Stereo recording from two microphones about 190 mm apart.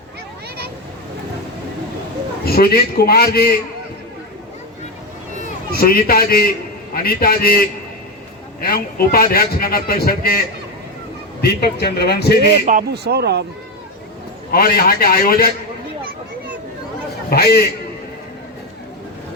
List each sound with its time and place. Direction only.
2.4 s a man's voice: 55° left (ahead or behind)
5.4 s a man's voice: 50° left (ahead or behind)
8.6 s a man's voice: 55° left (ahead or behind)
11.4 s a man's voice: 55° left (ahead or behind)
12.6 s speech: 50° right (ahead or behind)
14.5 s a man's voice: 55° left (ahead or behind)
17.2 s a man's voice: 55° left (ahead or behind)